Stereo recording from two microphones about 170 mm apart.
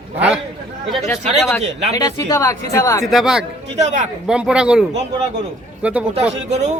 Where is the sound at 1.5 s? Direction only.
20° left (ahead or behind).